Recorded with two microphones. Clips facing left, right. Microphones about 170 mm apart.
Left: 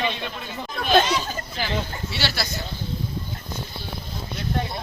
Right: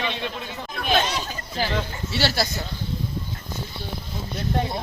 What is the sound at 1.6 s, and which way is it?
Speech, 40° right (ahead or behind).